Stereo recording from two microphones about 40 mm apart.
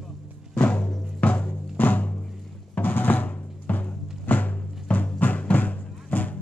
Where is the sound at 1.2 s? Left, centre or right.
Left.